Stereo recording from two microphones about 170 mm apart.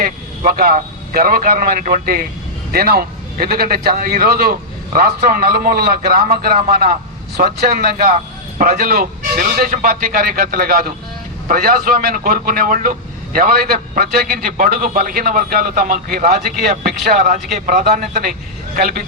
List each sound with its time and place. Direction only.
0.0 s a man's voice: 55° right (ahead or behind)